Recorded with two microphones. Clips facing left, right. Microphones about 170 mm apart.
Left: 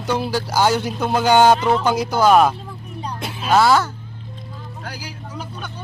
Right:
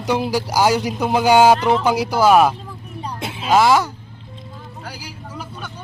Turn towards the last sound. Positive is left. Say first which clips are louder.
# left 1 dB
turn(degrees=-10)  # may be behind; listen again after turning